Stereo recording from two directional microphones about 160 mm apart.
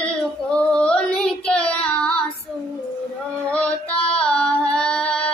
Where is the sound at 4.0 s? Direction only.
5° left (ahead or behind).